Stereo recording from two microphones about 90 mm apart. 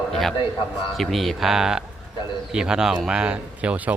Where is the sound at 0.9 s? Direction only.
Centre (ahead or behind).